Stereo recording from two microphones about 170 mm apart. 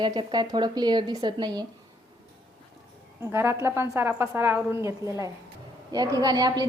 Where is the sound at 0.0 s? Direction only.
25° right (ahead or behind).